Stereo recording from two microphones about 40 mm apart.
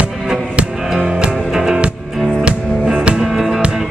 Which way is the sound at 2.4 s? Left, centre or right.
Right.